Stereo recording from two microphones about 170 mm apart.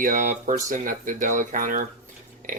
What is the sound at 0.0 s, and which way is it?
Speech, 50° right (ahead or behind).